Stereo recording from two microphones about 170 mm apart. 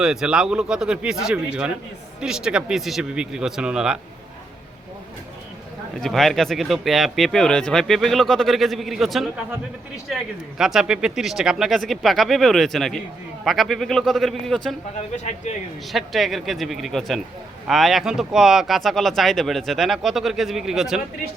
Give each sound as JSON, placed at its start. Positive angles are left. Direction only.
{"t": 0.0, "sound": "speech", "side_deg": -5}
{"t": 6.0, "sound": "speech", "side_deg": 0}
{"t": 10.6, "sound": "speech", "side_deg": 0}
{"t": 15.1, "sound": "speech", "side_deg": 45}
{"t": 15.9, "sound": "speech", "side_deg": 0}